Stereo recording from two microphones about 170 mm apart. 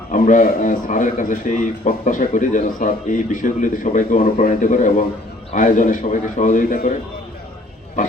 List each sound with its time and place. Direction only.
0.1 s a man's voice: 50° left (ahead or behind)
8.0 s a man's voice: 50° left (ahead or behind)